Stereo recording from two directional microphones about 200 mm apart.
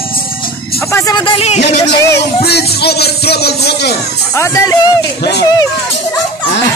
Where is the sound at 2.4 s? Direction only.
55° left (ahead or behind).